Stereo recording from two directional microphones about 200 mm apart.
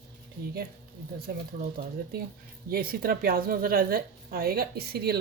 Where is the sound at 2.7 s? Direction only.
45° right (ahead or behind).